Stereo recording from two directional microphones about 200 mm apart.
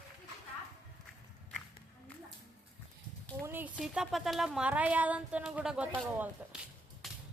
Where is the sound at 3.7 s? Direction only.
Centre (ahead or behind).